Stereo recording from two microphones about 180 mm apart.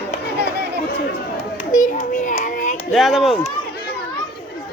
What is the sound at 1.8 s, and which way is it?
Child singing, 45° left (ahead or behind).